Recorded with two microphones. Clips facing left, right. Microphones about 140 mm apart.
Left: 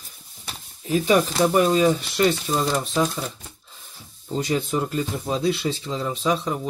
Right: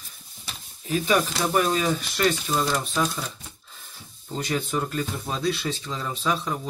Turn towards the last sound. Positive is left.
turn(degrees=20)  # may be behind; listen again after turning